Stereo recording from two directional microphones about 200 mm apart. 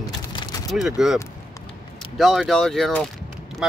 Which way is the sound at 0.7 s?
Centre (ahead or behind).